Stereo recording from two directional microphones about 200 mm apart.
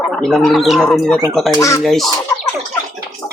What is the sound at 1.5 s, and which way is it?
Speech, 15° left (ahead or behind).